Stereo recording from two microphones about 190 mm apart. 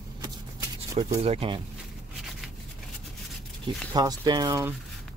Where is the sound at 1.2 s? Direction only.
30° right (ahead or behind).